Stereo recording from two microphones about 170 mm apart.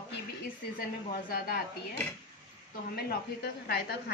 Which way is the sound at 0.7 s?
60° left (ahead or behind).